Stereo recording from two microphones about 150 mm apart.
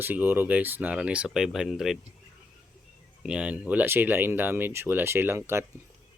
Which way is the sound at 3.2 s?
5° right (ahead or behind).